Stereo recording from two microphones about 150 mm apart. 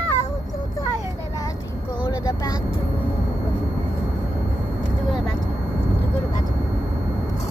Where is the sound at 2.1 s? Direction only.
25° left (ahead or behind).